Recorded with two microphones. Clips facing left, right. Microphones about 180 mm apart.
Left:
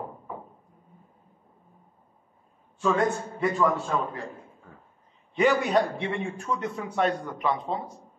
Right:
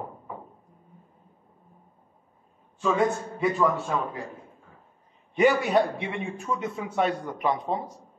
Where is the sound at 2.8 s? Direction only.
Centre (ahead or behind).